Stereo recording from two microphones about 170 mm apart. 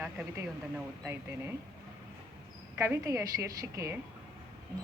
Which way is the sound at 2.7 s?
15° right (ahead or behind).